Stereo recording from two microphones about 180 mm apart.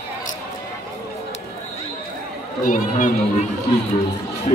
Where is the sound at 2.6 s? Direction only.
45° left (ahead or behind).